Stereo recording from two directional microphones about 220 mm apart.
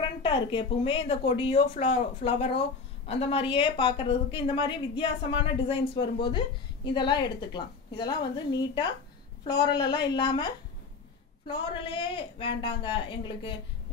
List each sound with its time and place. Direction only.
0.2 s a woman's voice: 20° left (ahead or behind)